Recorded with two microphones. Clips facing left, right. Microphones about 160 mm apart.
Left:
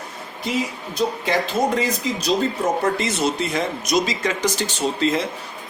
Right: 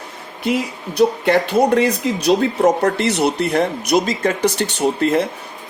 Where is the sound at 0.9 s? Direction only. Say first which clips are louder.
Right 7 dB; 65° right (ahead or behind).